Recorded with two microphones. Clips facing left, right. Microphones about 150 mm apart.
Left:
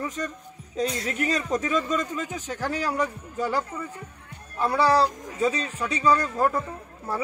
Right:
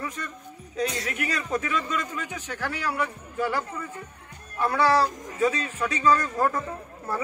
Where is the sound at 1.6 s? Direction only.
40° left (ahead or behind).